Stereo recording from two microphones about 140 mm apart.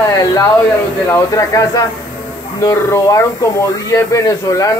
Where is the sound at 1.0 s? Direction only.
20° left (ahead or behind).